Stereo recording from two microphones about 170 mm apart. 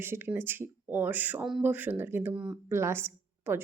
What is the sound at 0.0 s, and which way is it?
Speech, 15° right (ahead or behind).